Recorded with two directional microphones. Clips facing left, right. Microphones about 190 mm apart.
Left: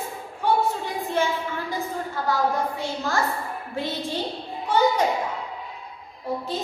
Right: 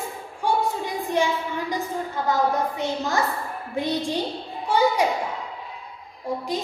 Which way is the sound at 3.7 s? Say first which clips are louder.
Right 4 dB; 15° right (ahead or behind).